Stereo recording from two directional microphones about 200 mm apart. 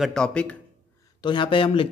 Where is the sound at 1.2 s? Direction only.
25° left (ahead or behind).